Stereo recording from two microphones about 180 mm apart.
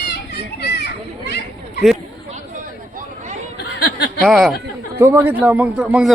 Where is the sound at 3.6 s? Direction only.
65° left (ahead or behind).